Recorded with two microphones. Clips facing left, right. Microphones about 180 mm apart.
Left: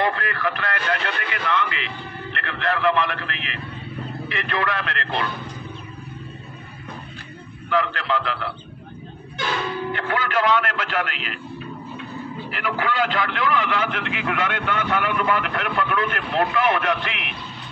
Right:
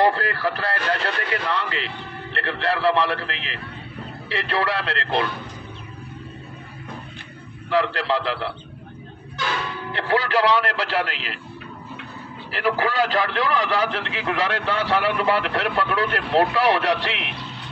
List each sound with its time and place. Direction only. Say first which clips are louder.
0.0 s radio: right 3 dB; 35° right (ahead or behind)
2.3 s a man's voice: right 2 dB; 35° right (ahead or behind)
7.7 s a man's voice: right 2 dB; 35° right (ahead or behind)
9.9 s a man's voice: right 5 dB; 35° right (ahead or behind)
12.4 s a man's voice: right 4 dB; 35° right (ahead or behind)